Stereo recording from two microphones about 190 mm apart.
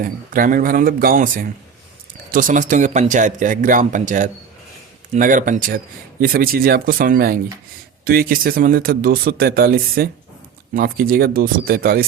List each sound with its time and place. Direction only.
0.0 s speech: 45° right (ahead or behind)